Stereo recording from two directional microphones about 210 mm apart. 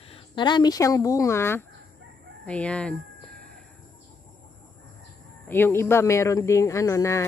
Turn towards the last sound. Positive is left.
turn(degrees=15)  # may be behind; listen again after turning